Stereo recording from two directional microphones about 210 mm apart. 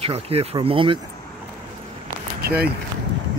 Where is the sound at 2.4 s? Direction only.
50° right (ahead or behind).